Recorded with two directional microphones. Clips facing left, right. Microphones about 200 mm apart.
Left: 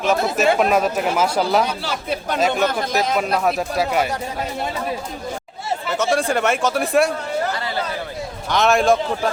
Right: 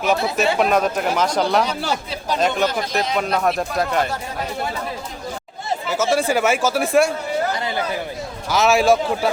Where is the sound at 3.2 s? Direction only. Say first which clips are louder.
Even; 5° left (ahead or behind).